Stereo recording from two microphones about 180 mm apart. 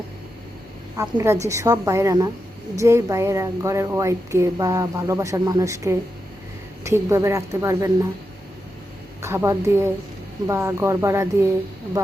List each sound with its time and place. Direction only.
1.2 s speech: 15° right (ahead or behind)
9.2 s speech: 15° right (ahead or behind)